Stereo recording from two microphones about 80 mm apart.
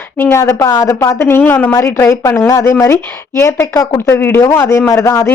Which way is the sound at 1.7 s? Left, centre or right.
Left.